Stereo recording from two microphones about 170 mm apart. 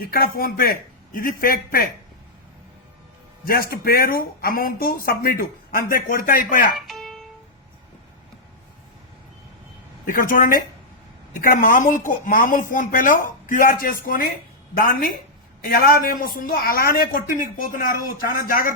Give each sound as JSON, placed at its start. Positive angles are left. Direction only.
{"t": 0.0, "sound": "speech", "side_deg": 60}
{"t": 3.4, "sound": "speech", "side_deg": 60}
{"t": 6.7, "sound": "music", "side_deg": 0}
{"t": 10.1, "sound": "speech", "side_deg": 55}